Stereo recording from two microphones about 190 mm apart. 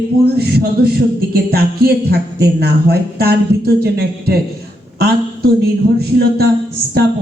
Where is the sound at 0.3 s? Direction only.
55° right (ahead or behind).